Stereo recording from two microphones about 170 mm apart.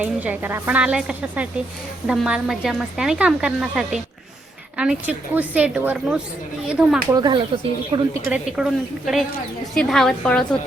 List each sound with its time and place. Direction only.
0.0 s a woman's voice: 10° right (ahead or behind)
7.1 s a woman's voice: 25° right (ahead or behind)
8.3 s a woman's voice: 5° right (ahead or behind)